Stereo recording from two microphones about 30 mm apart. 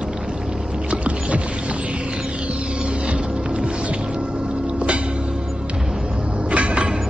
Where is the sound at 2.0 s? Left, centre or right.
Right.